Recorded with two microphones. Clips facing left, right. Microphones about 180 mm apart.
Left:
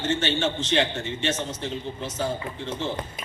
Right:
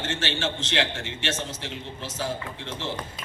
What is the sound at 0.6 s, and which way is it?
A man's voice, 90° right.